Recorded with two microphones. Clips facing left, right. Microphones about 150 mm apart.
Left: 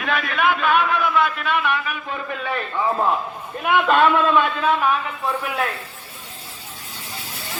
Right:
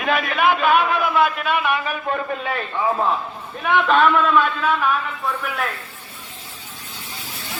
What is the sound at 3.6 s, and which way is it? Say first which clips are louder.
Speech: even; 10° left (ahead or behind).